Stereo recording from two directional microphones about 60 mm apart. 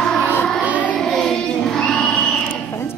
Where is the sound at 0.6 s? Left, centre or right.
Right.